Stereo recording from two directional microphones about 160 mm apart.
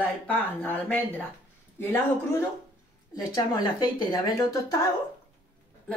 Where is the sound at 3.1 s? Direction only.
25° left (ahead or behind).